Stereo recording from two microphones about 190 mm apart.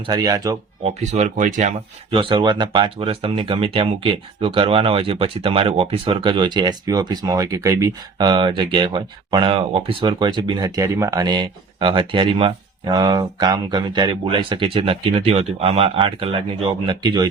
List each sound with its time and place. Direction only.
0.0 s speech: 20° right (ahead or behind)
0.9 s speech: 35° right (ahead or behind)
2.1 s speech: 25° right (ahead or behind)